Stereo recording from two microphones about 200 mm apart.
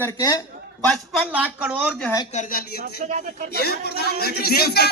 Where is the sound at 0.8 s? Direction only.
Centre (ahead or behind).